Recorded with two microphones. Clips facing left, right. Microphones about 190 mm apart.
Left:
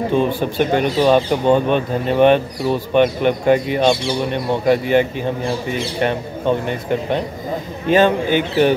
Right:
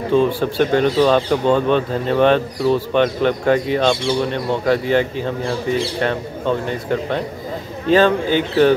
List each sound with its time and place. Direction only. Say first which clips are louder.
0.1 s speech: right 6 dB; 15° left (ahead or behind)